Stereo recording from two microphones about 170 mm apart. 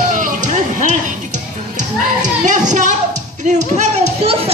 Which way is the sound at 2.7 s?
45° right (ahead or behind).